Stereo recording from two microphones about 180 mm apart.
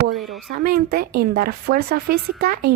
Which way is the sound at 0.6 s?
55° right (ahead or behind).